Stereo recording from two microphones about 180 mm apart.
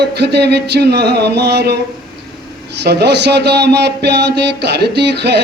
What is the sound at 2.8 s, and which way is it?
Speech, 70° right (ahead or behind).